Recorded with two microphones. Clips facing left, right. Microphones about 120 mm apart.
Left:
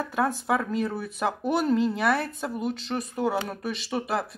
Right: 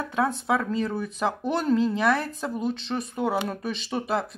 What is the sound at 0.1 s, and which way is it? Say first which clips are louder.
Speech: right 2 dB; centre (ahead or behind).